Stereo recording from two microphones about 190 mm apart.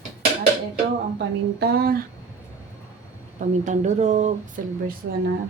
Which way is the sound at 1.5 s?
55° right (ahead or behind).